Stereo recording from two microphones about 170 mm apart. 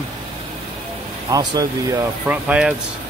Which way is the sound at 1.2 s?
20° right (ahead or behind).